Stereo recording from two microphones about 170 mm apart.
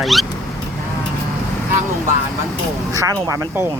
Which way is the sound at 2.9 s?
20° right (ahead or behind).